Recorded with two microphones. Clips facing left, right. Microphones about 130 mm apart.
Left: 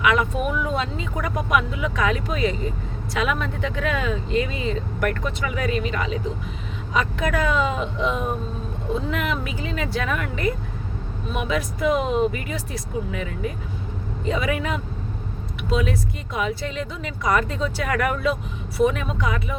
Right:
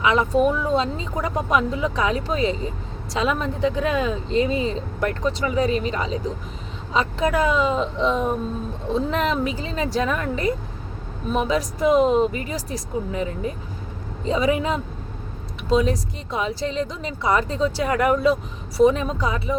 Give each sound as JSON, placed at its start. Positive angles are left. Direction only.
{"t": 0.0, "sound": "speech", "side_deg": -30}